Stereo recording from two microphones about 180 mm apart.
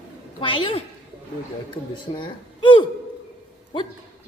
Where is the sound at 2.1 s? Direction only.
25° left (ahead or behind).